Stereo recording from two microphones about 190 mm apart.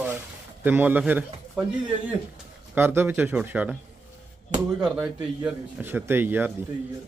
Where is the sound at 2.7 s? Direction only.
10° right (ahead or behind).